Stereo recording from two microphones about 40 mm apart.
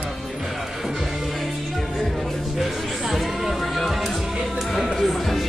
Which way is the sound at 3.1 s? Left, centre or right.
Centre.